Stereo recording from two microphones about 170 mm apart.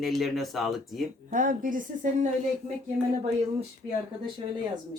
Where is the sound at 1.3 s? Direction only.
50° right (ahead or behind).